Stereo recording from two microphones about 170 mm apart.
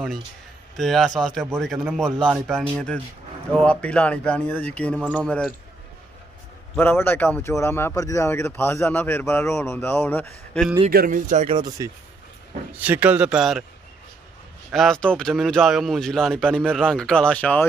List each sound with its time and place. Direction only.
0.7 s speech: centre (ahead or behind)
6.8 s speech: 15° left (ahead or behind)
10.9 s speech: 55° right (ahead or behind)
11.5 s speech: 20° right (ahead or behind)
12.7 s a man's voice: 10° right (ahead or behind)
14.7 s speech: centre (ahead or behind)